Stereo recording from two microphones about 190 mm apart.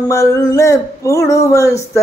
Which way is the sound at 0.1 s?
15° left (ahead or behind).